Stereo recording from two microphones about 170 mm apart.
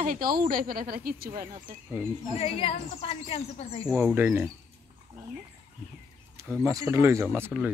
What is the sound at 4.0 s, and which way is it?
Speech, 10° right (ahead or behind).